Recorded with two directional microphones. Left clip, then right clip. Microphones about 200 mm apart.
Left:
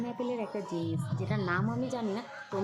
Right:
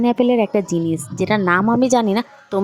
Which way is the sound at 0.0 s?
55° right (ahead or behind).